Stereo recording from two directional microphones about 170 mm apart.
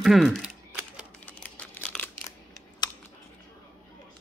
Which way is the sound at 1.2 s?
10° left (ahead or behind).